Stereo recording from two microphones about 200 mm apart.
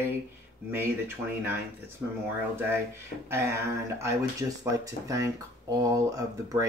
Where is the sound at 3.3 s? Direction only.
15° right (ahead or behind).